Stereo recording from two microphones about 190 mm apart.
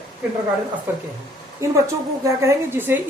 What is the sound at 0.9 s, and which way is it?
A woman's voice, 10° right (ahead or behind).